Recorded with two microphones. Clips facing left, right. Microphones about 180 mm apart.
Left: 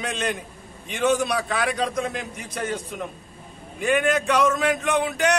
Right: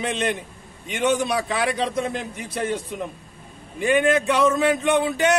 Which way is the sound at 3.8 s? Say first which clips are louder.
Right 2 dB; centre (ahead or behind).